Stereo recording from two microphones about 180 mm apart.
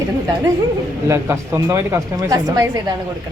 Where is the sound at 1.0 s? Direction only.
15° right (ahead or behind).